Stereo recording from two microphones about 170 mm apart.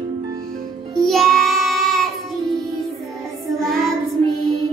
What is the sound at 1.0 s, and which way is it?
Child singing, centre (ahead or behind).